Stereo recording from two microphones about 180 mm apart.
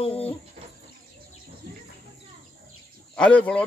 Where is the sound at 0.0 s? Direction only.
30° left (ahead or behind).